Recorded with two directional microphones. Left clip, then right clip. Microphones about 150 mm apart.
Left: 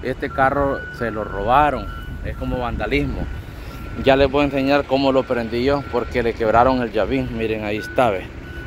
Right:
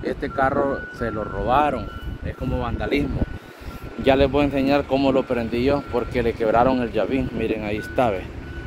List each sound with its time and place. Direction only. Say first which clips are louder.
0.0 s speech: left 3 dB; 20° left (ahead or behind)
1.5 s speech: left 4 dB; 15° left (ahead or behind)
2.5 s speech: left 2 dB; centre (ahead or behind)